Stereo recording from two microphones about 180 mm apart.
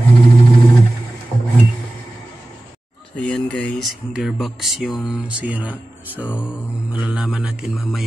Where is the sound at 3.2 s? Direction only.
5° left (ahead or behind).